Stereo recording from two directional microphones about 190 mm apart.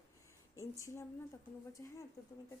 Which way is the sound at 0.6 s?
15° left (ahead or behind).